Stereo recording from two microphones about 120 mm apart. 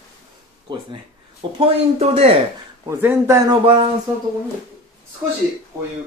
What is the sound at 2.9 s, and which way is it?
Speech, 20° right (ahead or behind).